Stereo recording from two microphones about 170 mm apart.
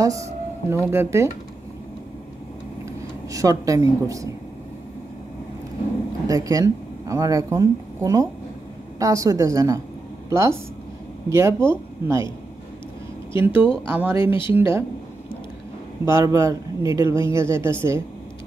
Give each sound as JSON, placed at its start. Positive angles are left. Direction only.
{"t": 0.0, "sound": "speech", "side_deg": -20}
{"t": 2.8, "sound": "speech", "side_deg": -20}
{"t": 6.2, "sound": "a woman's voice", "side_deg": -20}
{"t": 13.3, "sound": "speech", "side_deg": -15}
{"t": 16.1, "sound": "speech", "side_deg": -15}